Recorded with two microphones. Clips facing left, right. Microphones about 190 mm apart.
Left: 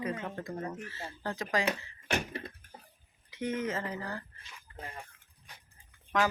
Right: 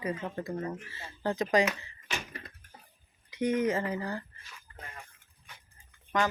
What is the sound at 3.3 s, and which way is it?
Speech, 15° right (ahead or behind).